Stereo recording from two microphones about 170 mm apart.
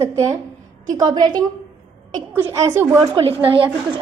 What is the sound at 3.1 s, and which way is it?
Speech, 35° right (ahead or behind).